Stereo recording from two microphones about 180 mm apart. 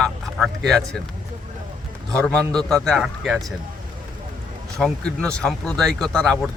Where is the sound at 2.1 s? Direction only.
5° left (ahead or behind).